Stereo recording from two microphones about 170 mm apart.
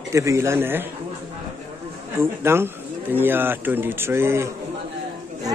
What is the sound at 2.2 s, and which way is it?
Speech, 15° right (ahead or behind).